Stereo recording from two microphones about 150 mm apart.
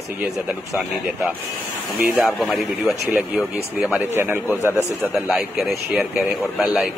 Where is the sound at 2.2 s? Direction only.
Centre (ahead or behind).